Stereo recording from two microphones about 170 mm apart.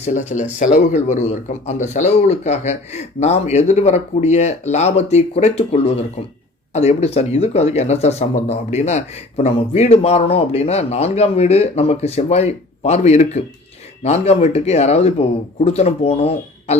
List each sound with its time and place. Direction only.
0.0 s speech: 45° left (ahead or behind)